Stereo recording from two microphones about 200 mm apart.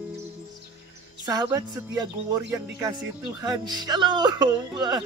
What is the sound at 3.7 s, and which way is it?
Music, 20° right (ahead or behind).